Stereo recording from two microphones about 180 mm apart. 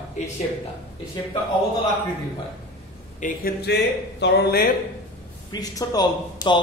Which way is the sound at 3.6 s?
70° left (ahead or behind).